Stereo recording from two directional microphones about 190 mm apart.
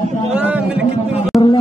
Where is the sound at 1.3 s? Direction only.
Centre (ahead or behind).